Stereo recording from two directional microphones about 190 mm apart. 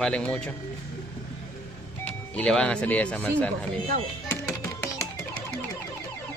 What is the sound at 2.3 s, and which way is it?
Speech, 5° left (ahead or behind).